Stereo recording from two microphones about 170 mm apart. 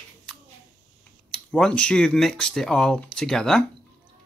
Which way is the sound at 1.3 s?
5° left (ahead or behind).